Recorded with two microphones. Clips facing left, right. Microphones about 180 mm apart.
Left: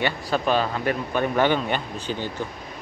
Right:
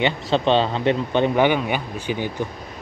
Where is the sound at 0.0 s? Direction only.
25° right (ahead or behind).